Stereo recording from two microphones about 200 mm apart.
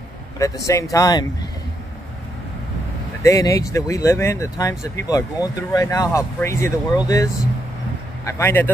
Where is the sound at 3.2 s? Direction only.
15° left (ahead or behind).